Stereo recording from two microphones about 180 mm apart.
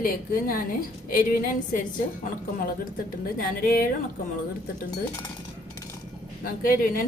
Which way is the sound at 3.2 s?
55° left (ahead or behind).